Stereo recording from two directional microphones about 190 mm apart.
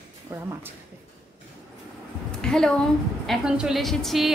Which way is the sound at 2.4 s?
5° left (ahead or behind).